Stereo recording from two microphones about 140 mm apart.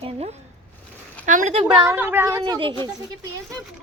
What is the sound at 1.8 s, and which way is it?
Speech, 15° right (ahead or behind).